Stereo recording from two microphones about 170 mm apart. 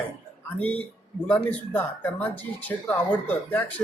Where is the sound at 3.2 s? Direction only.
10° left (ahead or behind).